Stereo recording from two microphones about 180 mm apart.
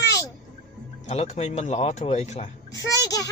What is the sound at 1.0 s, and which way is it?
Speech, 35° left (ahead or behind).